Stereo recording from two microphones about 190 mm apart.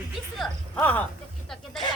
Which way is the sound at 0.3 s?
5° left (ahead or behind).